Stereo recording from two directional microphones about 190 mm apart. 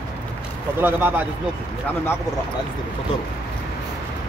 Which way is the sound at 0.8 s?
10° right (ahead or behind).